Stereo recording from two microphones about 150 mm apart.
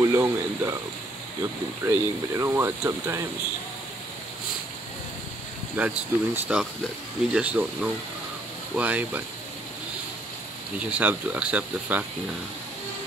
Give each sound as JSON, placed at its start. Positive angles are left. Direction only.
{"t": 0.0, "sound": "speech", "side_deg": -20}
{"t": 1.9, "sound": "speech", "side_deg": -15}
{"t": 5.8, "sound": "speech", "side_deg": -10}
{"t": 10.8, "sound": "speech", "side_deg": -10}